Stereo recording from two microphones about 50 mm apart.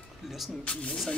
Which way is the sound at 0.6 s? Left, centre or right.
Left.